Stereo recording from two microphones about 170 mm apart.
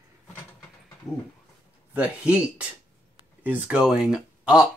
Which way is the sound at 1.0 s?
20° left (ahead or behind).